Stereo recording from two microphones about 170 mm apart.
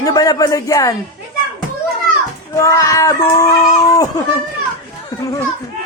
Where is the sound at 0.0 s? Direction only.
20° left (ahead or behind).